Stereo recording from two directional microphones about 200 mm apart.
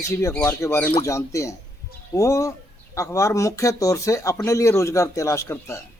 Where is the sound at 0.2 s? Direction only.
10° left (ahead or behind).